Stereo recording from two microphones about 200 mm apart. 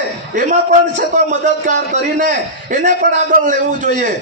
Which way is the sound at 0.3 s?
40° right (ahead or behind).